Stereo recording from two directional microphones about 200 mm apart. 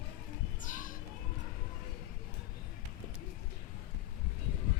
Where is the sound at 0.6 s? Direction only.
40° left (ahead or behind).